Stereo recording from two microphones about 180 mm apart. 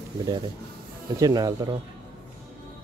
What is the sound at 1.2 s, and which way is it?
Speech, 20° right (ahead or behind).